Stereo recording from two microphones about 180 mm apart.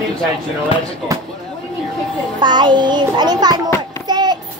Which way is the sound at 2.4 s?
25° right (ahead or behind).